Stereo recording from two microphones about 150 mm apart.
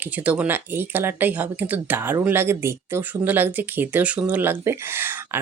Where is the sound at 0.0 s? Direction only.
10° right (ahead or behind).